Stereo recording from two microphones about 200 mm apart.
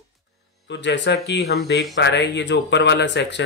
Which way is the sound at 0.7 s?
60° left (ahead or behind).